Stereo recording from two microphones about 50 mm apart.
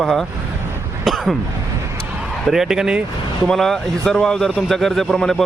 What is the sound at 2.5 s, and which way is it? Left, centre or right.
Speech, centre.